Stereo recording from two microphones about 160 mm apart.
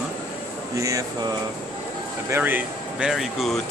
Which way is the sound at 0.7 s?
20° right (ahead or behind).